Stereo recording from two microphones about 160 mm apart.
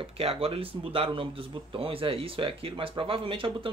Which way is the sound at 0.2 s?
35° right (ahead or behind).